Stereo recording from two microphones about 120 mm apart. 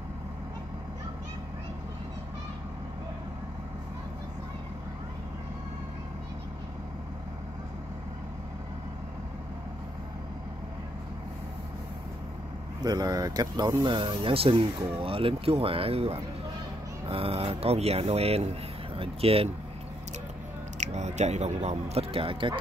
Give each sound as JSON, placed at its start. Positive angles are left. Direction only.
{"t": 12.8, "sound": "speech", "side_deg": -30}
{"t": 13.8, "sound": "speech", "side_deg": -45}
{"t": 20.7, "sound": "speech", "side_deg": -75}